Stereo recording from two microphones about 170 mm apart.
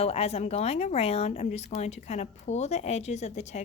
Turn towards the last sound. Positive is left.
turn(degrees=40)  # may be behind; listen again after turning